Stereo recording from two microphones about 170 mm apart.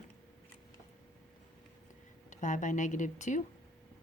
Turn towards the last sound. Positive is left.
turn(degrees=45)  # may be behind; listen again after turning